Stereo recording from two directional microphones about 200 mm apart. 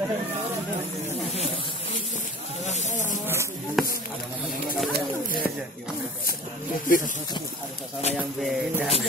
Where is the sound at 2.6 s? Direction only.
35° left (ahead or behind).